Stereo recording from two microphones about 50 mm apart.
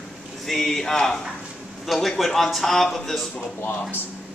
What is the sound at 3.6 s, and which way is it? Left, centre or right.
Speech, left.